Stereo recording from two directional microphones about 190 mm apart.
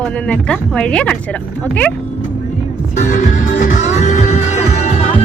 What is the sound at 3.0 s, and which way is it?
Music, 40° left (ahead or behind).